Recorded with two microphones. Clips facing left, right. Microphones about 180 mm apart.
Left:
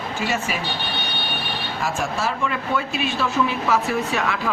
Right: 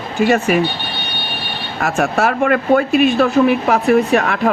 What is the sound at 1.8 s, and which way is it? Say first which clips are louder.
Speech: right 9 dB; 65° right (ahead or behind).